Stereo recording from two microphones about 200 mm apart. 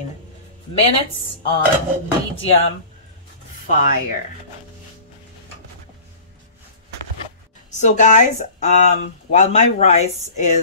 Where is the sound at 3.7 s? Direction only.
40° left (ahead or behind).